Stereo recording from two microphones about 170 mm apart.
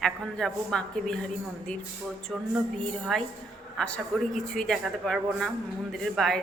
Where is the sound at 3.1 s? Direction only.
Centre (ahead or behind).